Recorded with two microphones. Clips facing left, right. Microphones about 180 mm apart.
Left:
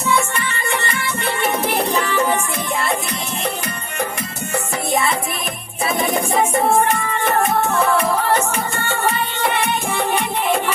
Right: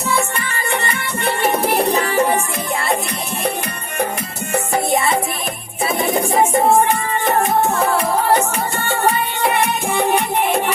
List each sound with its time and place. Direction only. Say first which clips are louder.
0.1 s music: left 1 dB; 35° right (ahead or behind)